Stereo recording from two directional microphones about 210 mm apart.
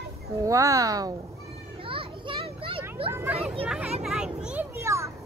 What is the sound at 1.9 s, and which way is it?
Children playing, 25° right (ahead or behind).